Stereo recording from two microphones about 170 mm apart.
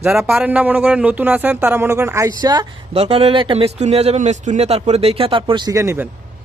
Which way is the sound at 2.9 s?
35° right (ahead or behind).